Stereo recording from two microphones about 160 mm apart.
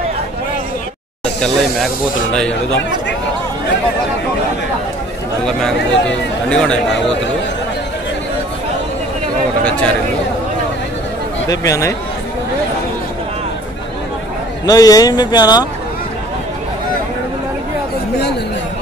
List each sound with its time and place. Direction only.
1.2 s speech: 5° left (ahead or behind)
5.4 s speech: 5° left (ahead or behind)
9.7 s speech: 5° left (ahead or behind)
11.4 s speech: 20° left (ahead or behind)
14.7 s speech: 25° left (ahead or behind)